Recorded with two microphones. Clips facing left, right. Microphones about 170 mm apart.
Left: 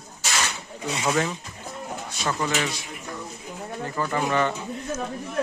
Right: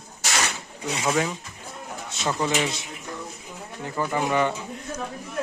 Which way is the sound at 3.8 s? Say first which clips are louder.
Right 1 dB; 10° right (ahead or behind).